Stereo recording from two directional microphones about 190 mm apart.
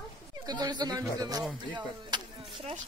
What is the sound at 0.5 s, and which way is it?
Speech, 20° right (ahead or behind).